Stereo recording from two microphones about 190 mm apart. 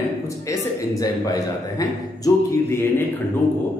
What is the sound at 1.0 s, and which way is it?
A man's voice, 20° left (ahead or behind).